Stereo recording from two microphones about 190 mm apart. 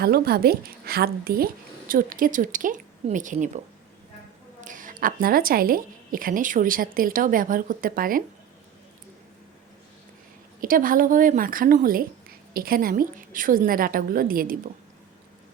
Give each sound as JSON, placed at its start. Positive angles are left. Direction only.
{"t": 0.0, "sound": "a woman's voice", "side_deg": -55}
{"t": 4.6, "sound": "a woman's voice", "side_deg": -45}
{"t": 10.6, "sound": "a woman's voice", "side_deg": -45}